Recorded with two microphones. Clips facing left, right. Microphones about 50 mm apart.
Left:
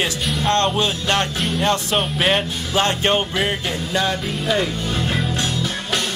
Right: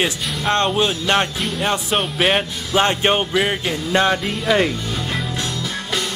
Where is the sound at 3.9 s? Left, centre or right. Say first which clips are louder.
Right 5 dB; right.